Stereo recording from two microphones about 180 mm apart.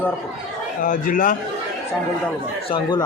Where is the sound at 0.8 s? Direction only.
45° left (ahead or behind).